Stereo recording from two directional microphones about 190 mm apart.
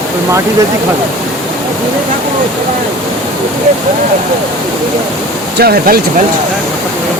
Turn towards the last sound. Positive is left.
turn(degrees=-55)  # may be behind; listen again after turning